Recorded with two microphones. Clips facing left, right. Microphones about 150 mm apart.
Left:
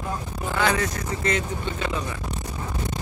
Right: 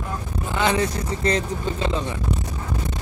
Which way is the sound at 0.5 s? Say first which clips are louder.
Right 2 dB; 20° right (ahead or behind).